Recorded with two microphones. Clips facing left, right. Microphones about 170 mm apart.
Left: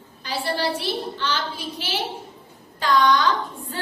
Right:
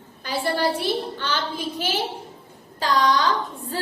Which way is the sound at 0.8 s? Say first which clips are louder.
Right 1 dB; 50° right (ahead or behind).